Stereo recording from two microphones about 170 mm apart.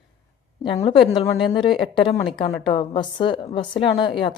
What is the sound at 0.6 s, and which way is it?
Speech, 30° left (ahead or behind).